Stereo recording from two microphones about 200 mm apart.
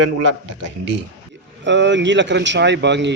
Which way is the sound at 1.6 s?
65° right (ahead or behind).